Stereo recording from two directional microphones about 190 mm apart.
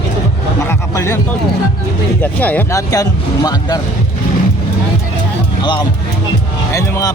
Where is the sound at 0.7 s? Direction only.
10° left (ahead or behind).